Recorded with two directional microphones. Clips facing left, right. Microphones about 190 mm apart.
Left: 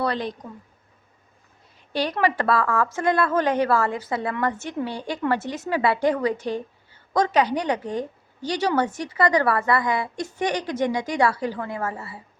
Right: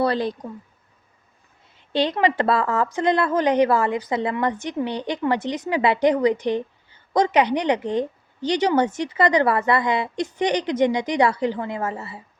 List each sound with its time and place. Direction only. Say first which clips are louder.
0.0 s speech: right 4 dB; 30° right (ahead or behind)
1.9 s a woman's voice: right 3 dB; 25° right (ahead or behind)